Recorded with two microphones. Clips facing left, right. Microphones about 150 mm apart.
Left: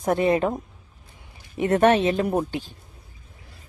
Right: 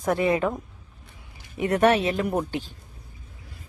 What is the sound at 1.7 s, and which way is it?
Speech, 30° left (ahead or behind).